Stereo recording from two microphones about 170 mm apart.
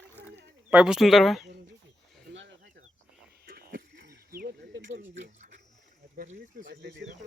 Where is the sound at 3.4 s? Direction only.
65° right (ahead or behind); by 5.0 s 90° right.